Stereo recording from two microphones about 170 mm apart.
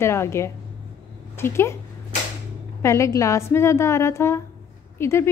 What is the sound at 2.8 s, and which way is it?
A woman's voice, 15° left (ahead or behind).